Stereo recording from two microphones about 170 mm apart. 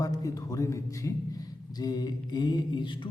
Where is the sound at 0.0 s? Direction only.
20° left (ahead or behind).